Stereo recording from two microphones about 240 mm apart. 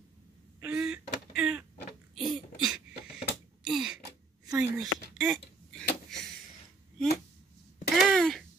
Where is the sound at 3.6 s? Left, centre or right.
Centre.